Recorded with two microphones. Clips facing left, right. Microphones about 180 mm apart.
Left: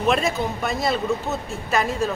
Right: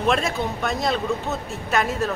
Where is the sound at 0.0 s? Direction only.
Centre (ahead or behind).